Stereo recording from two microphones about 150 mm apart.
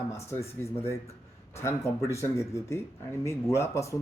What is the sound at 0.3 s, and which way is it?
Speech, 15° left (ahead or behind).